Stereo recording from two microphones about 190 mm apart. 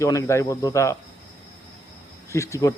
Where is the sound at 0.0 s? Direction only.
15° left (ahead or behind).